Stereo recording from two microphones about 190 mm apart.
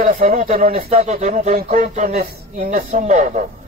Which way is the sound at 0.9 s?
35° right (ahead or behind).